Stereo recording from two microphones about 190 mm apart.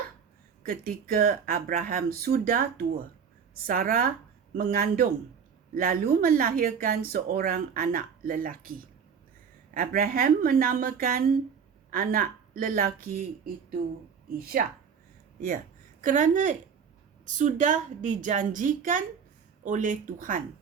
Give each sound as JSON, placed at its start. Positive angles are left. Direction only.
{"t": 0.6, "sound": "speech", "side_deg": -50}
{"t": 15.4, "sound": "a woman's voice", "side_deg": -45}